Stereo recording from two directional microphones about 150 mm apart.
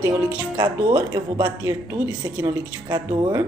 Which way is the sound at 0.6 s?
30° right (ahead or behind).